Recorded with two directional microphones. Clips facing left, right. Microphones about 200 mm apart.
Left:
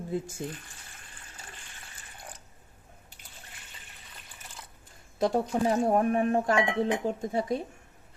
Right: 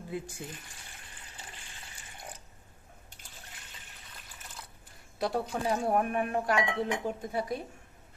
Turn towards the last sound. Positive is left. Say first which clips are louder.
# left 4 dB
turn(degrees=25)  # may be behind; listen again after turning